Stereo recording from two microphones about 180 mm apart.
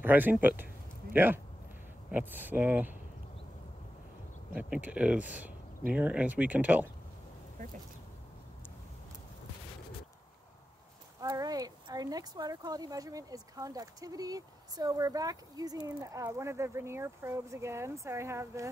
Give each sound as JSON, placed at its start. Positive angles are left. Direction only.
{"t": 0.0, "sound": "speech", "side_deg": -10}
{"t": 4.6, "sound": "speech", "side_deg": -10}
{"t": 11.1, "sound": "speech", "side_deg": -20}